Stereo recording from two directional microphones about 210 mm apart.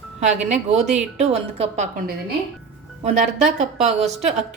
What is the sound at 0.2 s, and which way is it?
A woman's voice, 35° right (ahead or behind).